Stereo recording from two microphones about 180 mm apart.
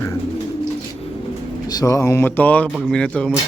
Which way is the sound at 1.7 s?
20° left (ahead or behind).